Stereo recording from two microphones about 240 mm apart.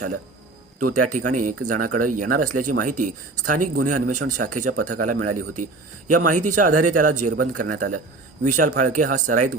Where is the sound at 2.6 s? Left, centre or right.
Right.